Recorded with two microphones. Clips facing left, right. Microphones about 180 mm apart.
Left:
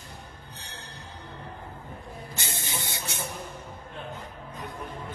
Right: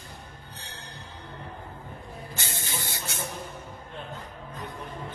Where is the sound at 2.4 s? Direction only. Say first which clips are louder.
Even; 25° left (ahead or behind).